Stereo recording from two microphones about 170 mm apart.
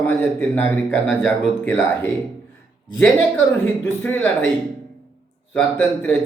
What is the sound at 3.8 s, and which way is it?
Speech, 10° left (ahead or behind).